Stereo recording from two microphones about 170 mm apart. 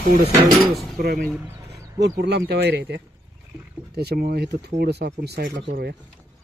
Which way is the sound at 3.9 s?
70° right (ahead or behind).